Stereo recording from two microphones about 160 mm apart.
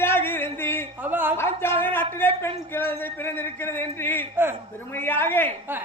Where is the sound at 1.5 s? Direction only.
15° left (ahead or behind).